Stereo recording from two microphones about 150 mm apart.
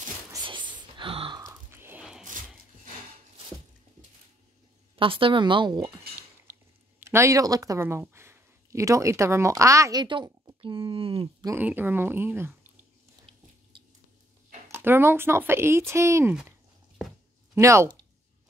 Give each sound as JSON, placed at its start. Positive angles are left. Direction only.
{"t": 0.5, "sound": "gasp", "side_deg": -30}
{"t": 1.4, "sound": "biting", "side_deg": -20}
{"t": 4.9, "sound": "a woman's voice", "side_deg": -35}
{"t": 7.0, "sound": "speech", "side_deg": -15}
{"t": 11.5, "sound": "speech", "side_deg": -15}
{"t": 14.7, "sound": "speech", "side_deg": -15}
{"t": 17.6, "sound": "speech", "side_deg": -20}